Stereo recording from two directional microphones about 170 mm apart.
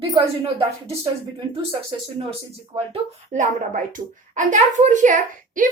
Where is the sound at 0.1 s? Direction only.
30° right (ahead or behind).